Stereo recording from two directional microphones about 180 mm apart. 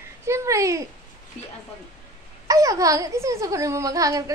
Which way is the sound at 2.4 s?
20° right (ahead or behind).